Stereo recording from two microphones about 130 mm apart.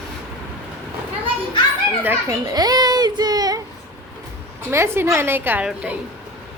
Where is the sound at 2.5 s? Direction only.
30° right (ahead or behind).